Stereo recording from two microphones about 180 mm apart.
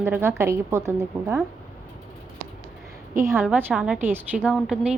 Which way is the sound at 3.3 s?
Centre (ahead or behind).